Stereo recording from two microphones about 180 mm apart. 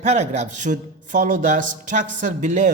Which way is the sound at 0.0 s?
40° right (ahead or behind).